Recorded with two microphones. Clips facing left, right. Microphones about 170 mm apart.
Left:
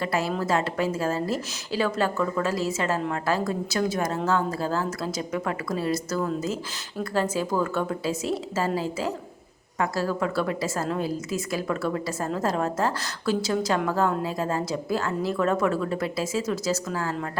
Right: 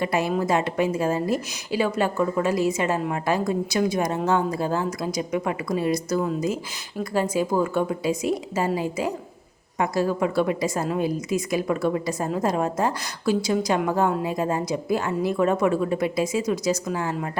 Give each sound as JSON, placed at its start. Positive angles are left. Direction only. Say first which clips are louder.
{"t": 0.0, "sound": "a woman's voice", "louder": "right 3 dB", "side_deg": -20}